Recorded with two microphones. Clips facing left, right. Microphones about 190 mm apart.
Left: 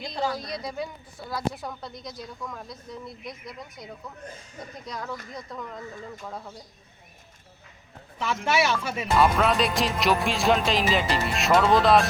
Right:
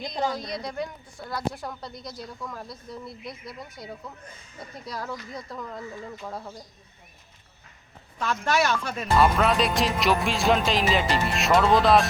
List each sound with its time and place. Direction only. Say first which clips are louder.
0.0 s a woman's voice: right 1 dB; 20° right (ahead or behind)
0.3 s speech: right 1 dB; centre (ahead or behind)
8.2 s speech: even; 10° left (ahead or behind)